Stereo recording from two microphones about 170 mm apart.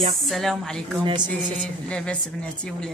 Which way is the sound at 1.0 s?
25° right (ahead or behind).